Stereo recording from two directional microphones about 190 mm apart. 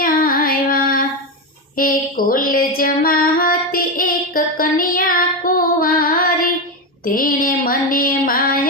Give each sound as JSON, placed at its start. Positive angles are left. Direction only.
{"t": 0.0, "sound": "music", "side_deg": 50}
{"t": 1.7, "sound": "mantra", "side_deg": 50}
{"t": 3.3, "sound": "music", "side_deg": 50}
{"t": 4.5, "sound": "female singing", "side_deg": 50}
{"t": 7.0, "sound": "a sound", "side_deg": 50}